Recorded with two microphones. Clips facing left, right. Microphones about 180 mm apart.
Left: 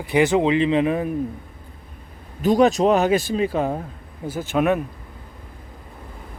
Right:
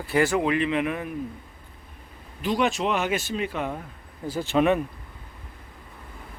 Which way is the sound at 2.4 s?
40° left (ahead or behind).